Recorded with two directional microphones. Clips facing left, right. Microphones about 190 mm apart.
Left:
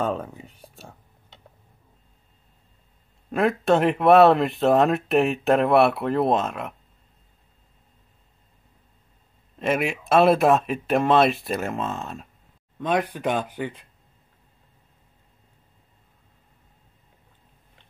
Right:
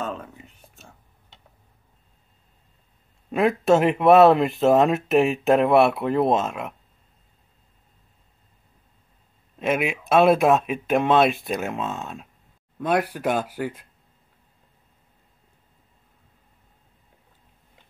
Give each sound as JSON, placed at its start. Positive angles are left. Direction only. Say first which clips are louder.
{"t": 0.0, "sound": "speech", "louder": "left 5 dB", "side_deg": 35}
{"t": 3.3, "sound": "speech", "louder": "right 2 dB", "side_deg": 0}
{"t": 9.6, "sound": "speech", "louder": "even", "side_deg": 0}